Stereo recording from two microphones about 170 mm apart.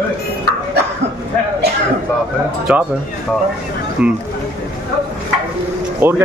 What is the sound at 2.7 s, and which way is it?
Speech, 10° right (ahead or behind).